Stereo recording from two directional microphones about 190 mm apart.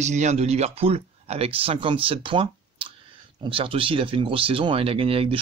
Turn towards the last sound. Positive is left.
turn(degrees=-30)  # may be behind; listen again after turning